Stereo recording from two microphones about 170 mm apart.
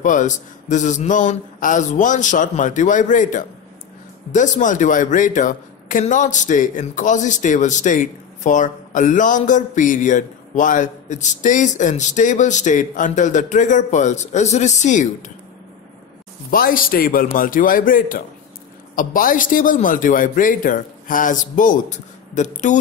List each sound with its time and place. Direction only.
0.0 s a man's voice: 45° left (ahead or behind)
16.4 s a man's voice: 60° left (ahead or behind)